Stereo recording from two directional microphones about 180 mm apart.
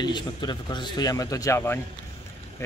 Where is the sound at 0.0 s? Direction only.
25° left (ahead or behind).